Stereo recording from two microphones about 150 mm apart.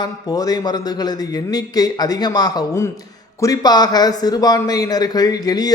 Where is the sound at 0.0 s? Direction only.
25° left (ahead or behind).